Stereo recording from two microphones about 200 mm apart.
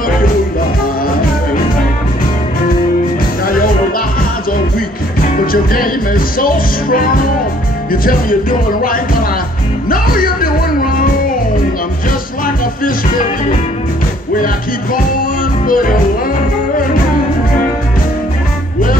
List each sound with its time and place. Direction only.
5.2 s music: 45° left (ahead or behind)
12.8 s music: 40° left (ahead or behind)